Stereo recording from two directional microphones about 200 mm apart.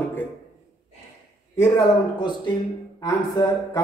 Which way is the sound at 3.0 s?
25° left (ahead or behind).